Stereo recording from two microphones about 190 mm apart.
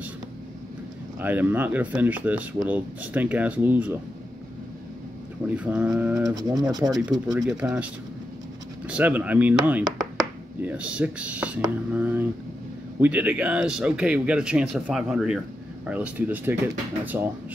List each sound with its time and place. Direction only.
1.2 s speech: 10° right (ahead or behind)
5.6 s speech: 5° right (ahead or behind)
6.2 s speech: 20° right (ahead or behind)
7.4 s speech: 5° right (ahead or behind)
9.8 s a sound: 20° right (ahead or behind)
10.6 s speech: 5° right (ahead or behind)